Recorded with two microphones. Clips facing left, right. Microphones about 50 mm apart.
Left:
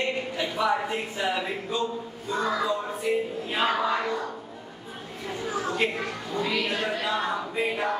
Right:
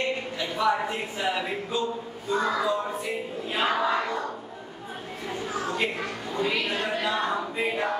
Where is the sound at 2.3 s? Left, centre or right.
Centre.